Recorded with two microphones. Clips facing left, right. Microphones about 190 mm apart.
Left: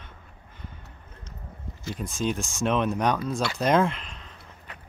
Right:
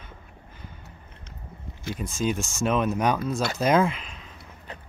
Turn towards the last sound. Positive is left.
turn(degrees=-5)  # may be behind; listen again after turning